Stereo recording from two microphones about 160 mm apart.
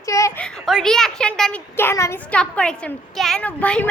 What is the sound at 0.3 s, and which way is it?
A woman's voice, 5° left (ahead or behind).